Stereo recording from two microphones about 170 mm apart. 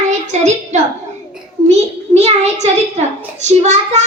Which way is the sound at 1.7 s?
40° right (ahead or behind).